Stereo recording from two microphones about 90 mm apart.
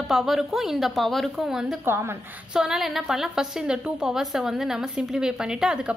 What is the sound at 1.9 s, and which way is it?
Speech, 30° right (ahead or behind).